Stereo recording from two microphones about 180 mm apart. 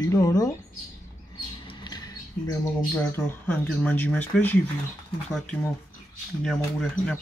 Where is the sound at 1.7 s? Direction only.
20° left (ahead or behind).